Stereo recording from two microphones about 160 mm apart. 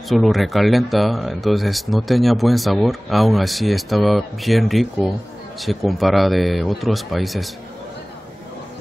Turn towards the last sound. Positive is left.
turn(degrees=0)  # may be behind; listen again after turning